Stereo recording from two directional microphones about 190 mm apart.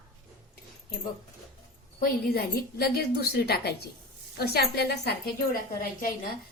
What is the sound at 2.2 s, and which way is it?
A woman's voice, 55° left (ahead or behind).